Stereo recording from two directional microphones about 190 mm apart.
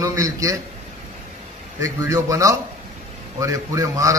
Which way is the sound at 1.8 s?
15° right (ahead or behind).